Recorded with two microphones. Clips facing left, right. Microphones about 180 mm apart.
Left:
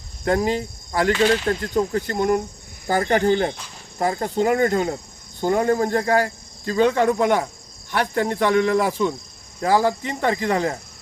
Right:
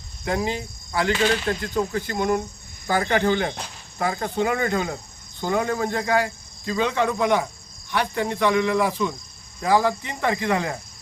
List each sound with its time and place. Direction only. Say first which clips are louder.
0.3 s cricket: left 5 dB; 45° left (ahead or behind)